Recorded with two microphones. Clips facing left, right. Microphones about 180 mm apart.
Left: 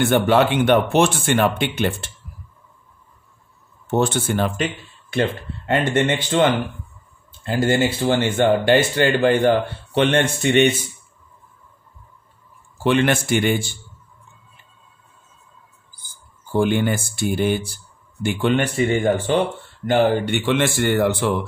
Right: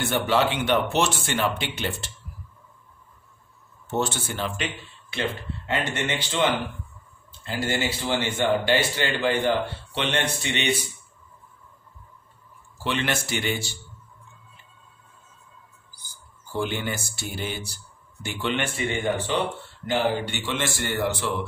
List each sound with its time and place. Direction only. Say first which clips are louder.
0.0 s speech: left 7 dB; 55° left (ahead or behind)
3.8 s speech: left 7 dB; 55° left (ahead or behind)
7.4 s speech: left 8 dB; 50° left (ahead or behind)
12.7 s speech: left 9 dB; 50° left (ahead or behind)
16.0 s speech: left 2 dB; 55° left (ahead or behind)
19.9 s speech: left 7 dB; 60° left (ahead or behind)